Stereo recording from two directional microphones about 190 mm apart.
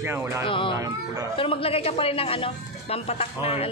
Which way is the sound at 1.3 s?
30° left (ahead or behind).